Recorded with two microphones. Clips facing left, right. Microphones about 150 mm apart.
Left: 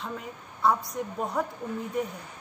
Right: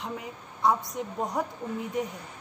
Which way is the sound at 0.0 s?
15° right (ahead or behind).